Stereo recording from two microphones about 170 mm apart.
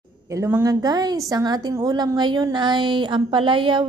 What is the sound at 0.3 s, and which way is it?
A woman's voice, 15° right (ahead or behind).